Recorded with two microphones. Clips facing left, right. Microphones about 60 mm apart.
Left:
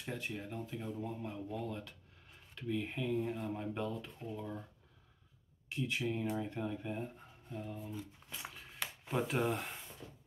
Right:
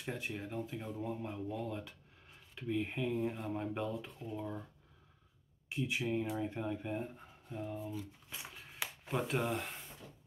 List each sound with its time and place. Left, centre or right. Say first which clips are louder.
0.0 s speech: right 1 dB; centre
5.7 s speech: right 1 dB; centre
8.3 s shuffling cards: left 1 dB; centre